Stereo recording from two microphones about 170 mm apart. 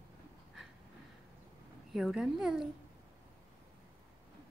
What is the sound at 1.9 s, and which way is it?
Speech, centre (ahead or behind).